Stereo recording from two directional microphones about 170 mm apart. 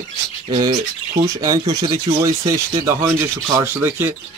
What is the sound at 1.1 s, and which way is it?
Speech, 20° right (ahead or behind).